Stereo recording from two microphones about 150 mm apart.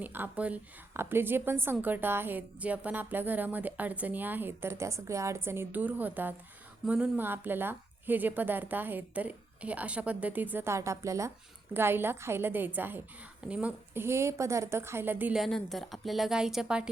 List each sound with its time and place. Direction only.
0.0 s a woman's voice: 10° right (ahead or behind)
15.4 s a woman's voice: centre (ahead or behind)